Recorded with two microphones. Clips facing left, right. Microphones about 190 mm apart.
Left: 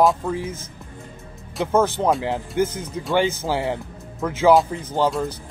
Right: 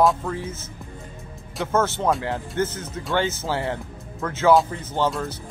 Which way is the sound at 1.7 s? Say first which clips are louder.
Left 3 dB; 15° left (ahead or behind).